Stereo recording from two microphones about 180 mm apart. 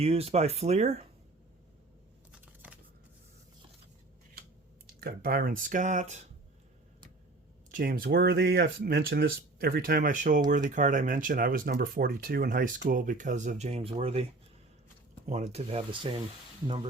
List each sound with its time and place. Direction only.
0.0 s speech: 35° right (ahead or behind)
2.6 s shuffling cards: 10° right (ahead or behind)
4.9 s speech: 55° right (ahead or behind)
7.7 s speech: 55° right (ahead or behind); by 14.3 s 30° right (ahead or behind)
15.3 s speech: 35° right (ahead or behind)